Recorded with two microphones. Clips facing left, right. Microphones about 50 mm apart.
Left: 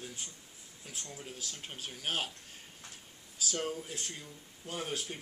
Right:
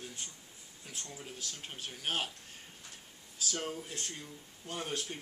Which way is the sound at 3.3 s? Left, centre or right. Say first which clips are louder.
Left 2 dB; centre.